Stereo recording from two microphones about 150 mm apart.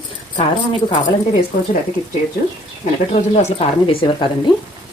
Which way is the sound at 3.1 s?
45° left (ahead or behind).